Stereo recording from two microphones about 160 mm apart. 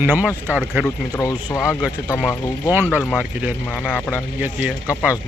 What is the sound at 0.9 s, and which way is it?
Speech, 15° left (ahead or behind).